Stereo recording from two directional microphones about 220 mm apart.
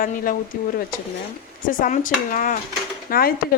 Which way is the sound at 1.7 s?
40° left (ahead or behind).